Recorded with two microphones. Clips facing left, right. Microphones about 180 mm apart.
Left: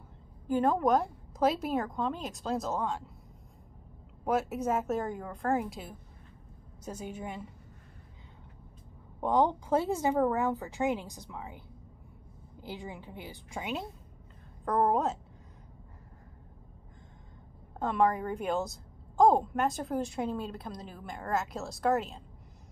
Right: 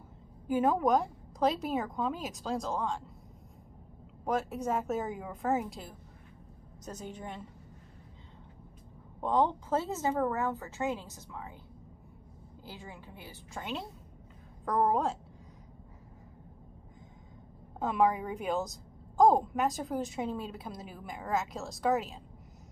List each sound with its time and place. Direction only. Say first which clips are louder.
0.5 s a woman's voice: left 1 dB; 5° right (ahead or behind)
4.2 s a woman's voice: left 2 dB; 5° left (ahead or behind)
9.2 s a woman's voice: left 2 dB; 10° left (ahead or behind)
12.6 s a woman's voice: left 6 dB; 15° left (ahead or behind)
17.7 s a woman's voice: even; 5° right (ahead or behind)